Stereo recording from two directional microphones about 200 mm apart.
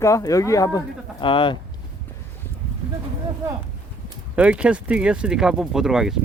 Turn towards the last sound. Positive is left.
turn(degrees=0)  # may be behind; listen again after turning